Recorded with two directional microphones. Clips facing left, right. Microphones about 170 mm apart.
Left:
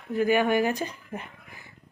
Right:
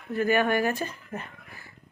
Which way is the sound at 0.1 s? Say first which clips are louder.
Left 1 dB; 15° left (ahead or behind).